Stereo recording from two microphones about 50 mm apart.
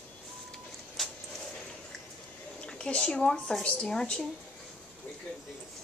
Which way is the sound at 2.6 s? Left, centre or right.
Centre.